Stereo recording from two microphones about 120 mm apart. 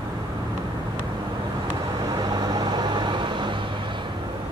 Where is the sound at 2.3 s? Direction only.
35° right (ahead or behind).